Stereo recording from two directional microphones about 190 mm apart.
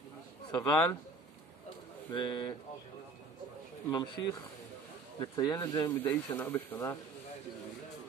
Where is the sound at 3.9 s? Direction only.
20° left (ahead or behind).